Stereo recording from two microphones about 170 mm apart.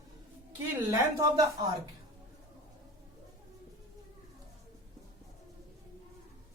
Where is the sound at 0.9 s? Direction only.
20° right (ahead or behind).